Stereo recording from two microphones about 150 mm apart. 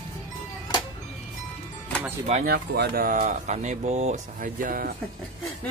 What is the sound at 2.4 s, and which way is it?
Speech, 90° right.